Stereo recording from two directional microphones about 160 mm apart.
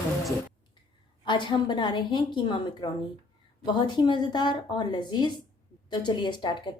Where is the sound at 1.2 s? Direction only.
30° left (ahead or behind).